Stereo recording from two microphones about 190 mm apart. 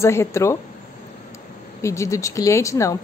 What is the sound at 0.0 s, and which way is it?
Speech, 15° left (ahead or behind).